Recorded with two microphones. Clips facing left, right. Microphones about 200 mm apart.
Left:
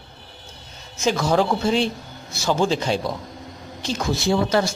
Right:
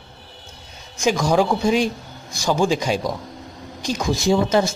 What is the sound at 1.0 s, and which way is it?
A man's voice, 15° right (ahead or behind).